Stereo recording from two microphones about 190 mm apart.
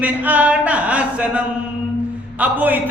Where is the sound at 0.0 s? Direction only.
10° right (ahead or behind).